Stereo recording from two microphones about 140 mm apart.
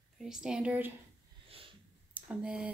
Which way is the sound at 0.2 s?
5° right (ahead or behind).